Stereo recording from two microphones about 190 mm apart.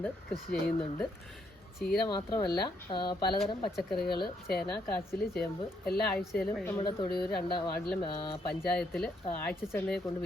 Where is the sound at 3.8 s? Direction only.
Centre (ahead or behind).